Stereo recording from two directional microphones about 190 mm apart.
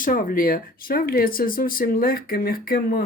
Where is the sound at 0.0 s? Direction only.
50° left (ahead or behind).